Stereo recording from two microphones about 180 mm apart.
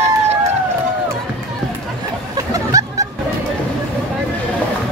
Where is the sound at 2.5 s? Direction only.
20° right (ahead or behind).